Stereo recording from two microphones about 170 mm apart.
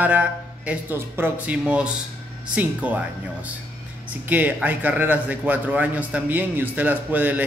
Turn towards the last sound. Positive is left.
turn(degrees=-10)  # may be behind; listen again after turning